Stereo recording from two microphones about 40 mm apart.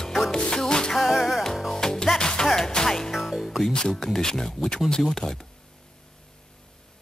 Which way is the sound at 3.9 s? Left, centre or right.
Centre.